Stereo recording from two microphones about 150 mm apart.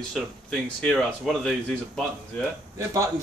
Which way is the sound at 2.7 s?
20° right (ahead or behind).